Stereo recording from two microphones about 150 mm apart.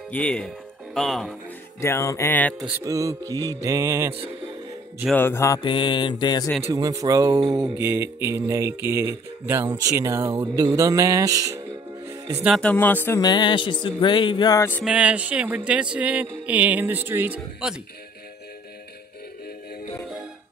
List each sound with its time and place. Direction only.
0.1 s music: 5° left (ahead or behind)
0.9 s speech: centre (ahead or behind)
1.8 s music: 20° left (ahead or behind)
2.8 s music: 20° right (ahead or behind)
5.1 s music: 15° left (ahead or behind)
5.6 s music: 35° left (ahead or behind)
6.7 s music: 25° right (ahead or behind)
7.5 s speech: 20° right (ahead or behind)
10.4 s music: 20° right (ahead or behind)
12.4 s speech: 5° left (ahead or behind)
12.7 s music: 15° left (ahead or behind)
13.2 s music: 30° left (ahead or behind)
14.9 s speech: 10° right (ahead or behind)